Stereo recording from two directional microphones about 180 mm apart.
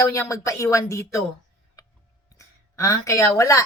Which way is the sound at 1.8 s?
20° left (ahead or behind).